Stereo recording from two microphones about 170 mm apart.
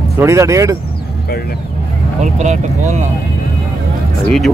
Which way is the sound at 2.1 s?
45° right (ahead or behind).